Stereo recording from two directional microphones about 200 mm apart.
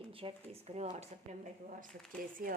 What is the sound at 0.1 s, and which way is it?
Speech, 25° right (ahead or behind).